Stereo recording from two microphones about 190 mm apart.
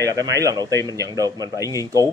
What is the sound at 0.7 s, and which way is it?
Speech, 15° left (ahead or behind).